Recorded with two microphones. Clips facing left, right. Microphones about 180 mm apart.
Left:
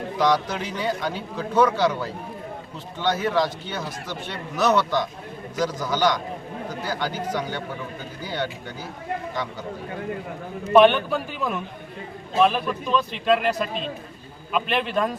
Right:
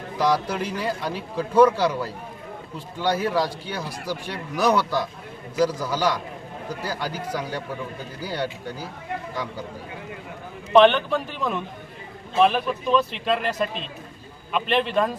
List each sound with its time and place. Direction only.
0.2 s speech: 10° right (ahead or behind)
10.7 s a man's voice: 5° left (ahead or behind)